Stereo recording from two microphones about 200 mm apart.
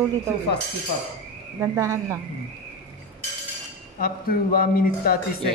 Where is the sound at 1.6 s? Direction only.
15° right (ahead or behind).